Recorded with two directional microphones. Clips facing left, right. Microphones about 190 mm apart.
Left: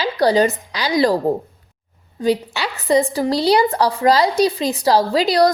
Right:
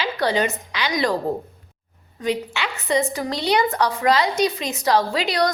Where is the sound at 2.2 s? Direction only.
35° left (ahead or behind).